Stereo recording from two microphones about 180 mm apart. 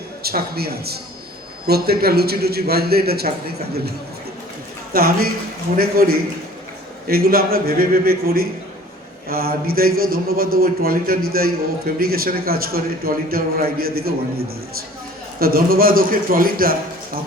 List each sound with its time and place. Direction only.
0.2 s a man's voice: 60° right (ahead or behind)
4.9 s a man's voice: 55° right (ahead or behind)